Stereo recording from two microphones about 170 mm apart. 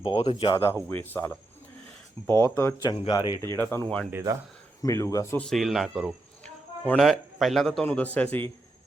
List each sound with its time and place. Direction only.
0.0 s speech: 35° left (ahead or behind)
0.5 s speech: 15° left (ahead or behind)
3.1 s speech: 25° left (ahead or behind)
3.5 s speech: 15° left (ahead or behind)
4.1 s speech: 20° right (ahead or behind)
4.8 s speech: 20° left (ahead or behind)
5.5 s speech: centre (ahead or behind)